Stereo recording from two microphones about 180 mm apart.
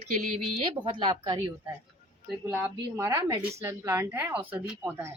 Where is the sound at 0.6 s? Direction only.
25° right (ahead or behind).